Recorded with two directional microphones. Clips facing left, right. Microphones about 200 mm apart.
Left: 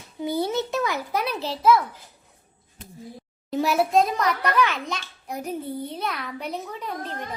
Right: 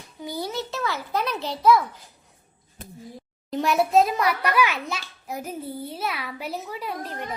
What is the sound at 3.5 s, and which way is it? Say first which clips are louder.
A child's voice: even; 5° left (ahead or behind).